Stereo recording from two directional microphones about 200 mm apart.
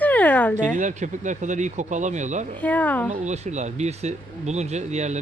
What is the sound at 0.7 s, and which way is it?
Speech, 35° right (ahead or behind).